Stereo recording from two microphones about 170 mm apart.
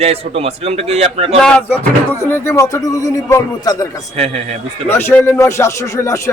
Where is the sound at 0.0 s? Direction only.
35° right (ahead or behind).